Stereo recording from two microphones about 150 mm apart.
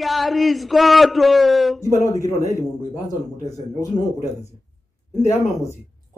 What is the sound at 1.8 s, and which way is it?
Speech, 20° left (ahead or behind).